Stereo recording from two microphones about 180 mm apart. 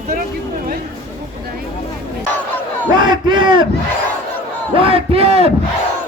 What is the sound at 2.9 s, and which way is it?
Battle cry, 25° right (ahead or behind).